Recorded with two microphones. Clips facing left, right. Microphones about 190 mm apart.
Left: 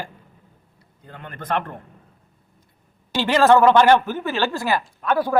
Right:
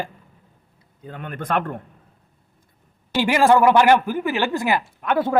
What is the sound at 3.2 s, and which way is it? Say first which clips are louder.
A man's voice: left 1 dB; 10° right (ahead or behind).